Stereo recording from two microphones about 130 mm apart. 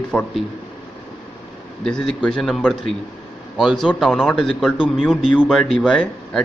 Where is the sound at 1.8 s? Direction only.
5° left (ahead or behind).